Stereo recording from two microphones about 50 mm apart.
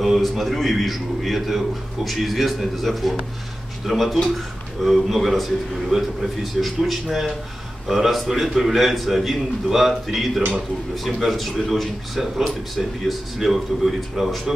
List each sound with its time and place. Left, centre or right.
0.0 s a man's voice: centre